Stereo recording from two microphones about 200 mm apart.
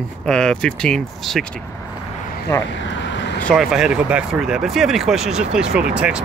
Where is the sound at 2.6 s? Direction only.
65° left (ahead or behind).